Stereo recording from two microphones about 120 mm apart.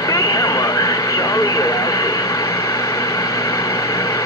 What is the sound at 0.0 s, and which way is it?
Vehicle, 30° left (ahead or behind).